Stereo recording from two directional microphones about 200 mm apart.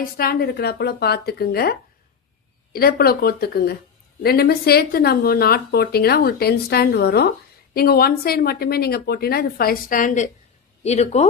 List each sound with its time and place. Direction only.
0.0 s speech: 50° left (ahead or behind)
2.7 s speech: 50° left (ahead or behind); by 11.3 s 35° left (ahead or behind)